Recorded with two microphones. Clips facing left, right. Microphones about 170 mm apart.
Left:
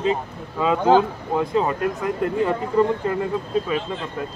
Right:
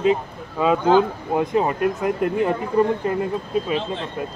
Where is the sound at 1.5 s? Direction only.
20° right (ahead or behind).